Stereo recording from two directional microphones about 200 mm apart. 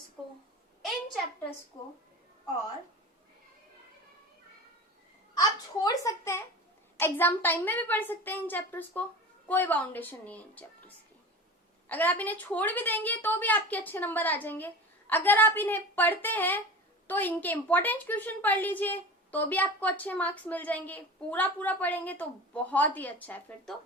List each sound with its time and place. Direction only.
1.7 s a woman's voice: 15° left (ahead or behind)
5.4 s a woman's voice: 20° left (ahead or behind)